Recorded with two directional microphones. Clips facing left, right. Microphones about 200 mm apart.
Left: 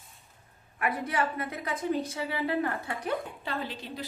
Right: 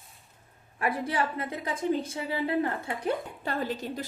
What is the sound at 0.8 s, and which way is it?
Speech, 30° right (ahead or behind).